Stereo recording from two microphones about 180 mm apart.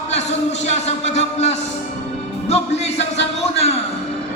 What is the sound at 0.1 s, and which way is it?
A man's voice, 40° left (ahead or behind).